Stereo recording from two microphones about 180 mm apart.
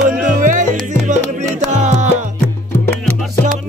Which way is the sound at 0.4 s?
45° right (ahead or behind).